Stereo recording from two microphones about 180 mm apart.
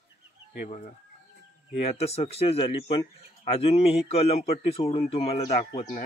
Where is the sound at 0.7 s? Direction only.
35° left (ahead or behind).